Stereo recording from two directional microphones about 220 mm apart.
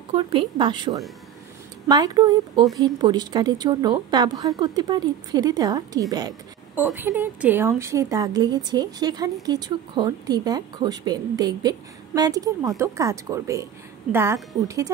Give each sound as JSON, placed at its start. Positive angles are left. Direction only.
{"t": 0.1, "sound": "a woman's voice", "side_deg": -25}